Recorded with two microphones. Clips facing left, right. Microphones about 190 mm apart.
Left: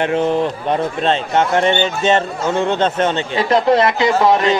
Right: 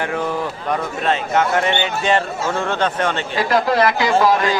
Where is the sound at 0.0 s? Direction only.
25° left (ahead or behind).